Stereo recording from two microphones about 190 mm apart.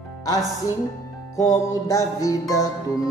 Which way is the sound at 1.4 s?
15° left (ahead or behind).